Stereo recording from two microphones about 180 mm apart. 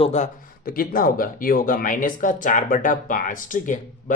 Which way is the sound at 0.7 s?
55° left (ahead or behind).